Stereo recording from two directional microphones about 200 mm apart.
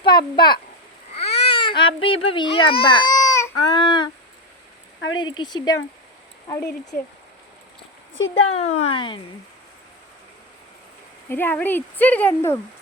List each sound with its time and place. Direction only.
0.0 s a child's voice: 20° left (ahead or behind)
5.1 s a child's voice: 25° left (ahead or behind)
8.1 s speech: 80° left
8.9 s a child's voice: 25° left (ahead or behind)
11.3 s speech: 10° left (ahead or behind)